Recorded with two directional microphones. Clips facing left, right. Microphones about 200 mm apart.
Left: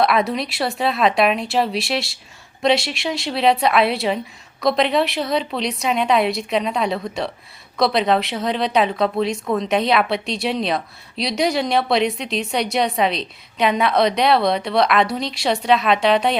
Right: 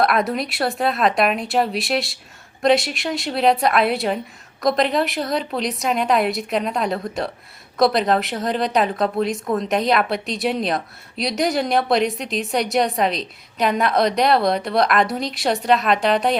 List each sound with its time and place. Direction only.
0.0 s a woman's voice: centre (ahead or behind)